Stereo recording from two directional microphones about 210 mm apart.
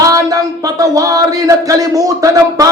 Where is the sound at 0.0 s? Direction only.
15° right (ahead or behind).